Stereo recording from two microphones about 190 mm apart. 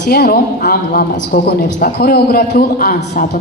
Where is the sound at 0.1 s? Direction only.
50° left (ahead or behind).